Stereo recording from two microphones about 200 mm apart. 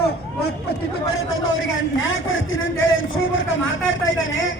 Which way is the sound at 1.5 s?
70° left (ahead or behind).